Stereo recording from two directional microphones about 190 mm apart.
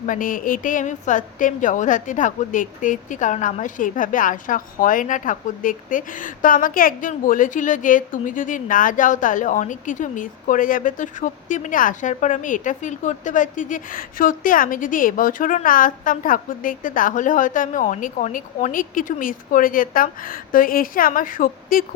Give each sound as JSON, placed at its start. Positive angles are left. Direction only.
{"t": 0.0, "sound": "a woman's voice", "side_deg": 45}